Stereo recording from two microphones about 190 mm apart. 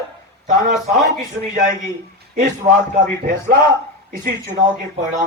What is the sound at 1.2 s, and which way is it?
Speech, 45° right (ahead or behind).